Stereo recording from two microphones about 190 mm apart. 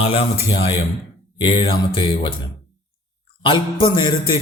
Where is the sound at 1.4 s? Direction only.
25° left (ahead or behind).